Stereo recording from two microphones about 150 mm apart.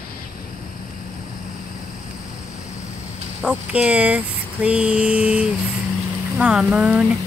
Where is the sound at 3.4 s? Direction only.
5° right (ahead or behind).